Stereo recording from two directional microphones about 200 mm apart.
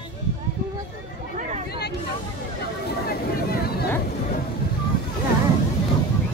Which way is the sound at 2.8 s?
50° left (ahead or behind).